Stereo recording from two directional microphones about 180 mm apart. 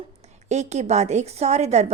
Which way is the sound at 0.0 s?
35° right (ahead or behind).